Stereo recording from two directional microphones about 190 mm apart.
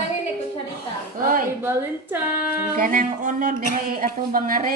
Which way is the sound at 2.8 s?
45° right (ahead or behind).